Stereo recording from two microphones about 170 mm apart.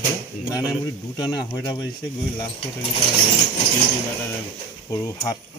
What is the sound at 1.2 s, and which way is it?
Speech, 25° left (ahead or behind).